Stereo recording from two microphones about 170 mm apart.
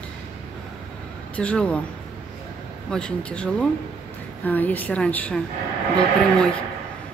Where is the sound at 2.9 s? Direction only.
5° left (ahead or behind).